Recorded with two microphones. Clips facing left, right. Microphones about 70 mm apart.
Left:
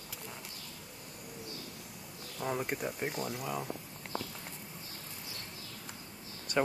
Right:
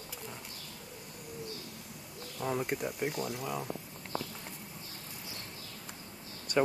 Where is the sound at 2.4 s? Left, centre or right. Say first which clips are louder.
Right 1 dB; centre.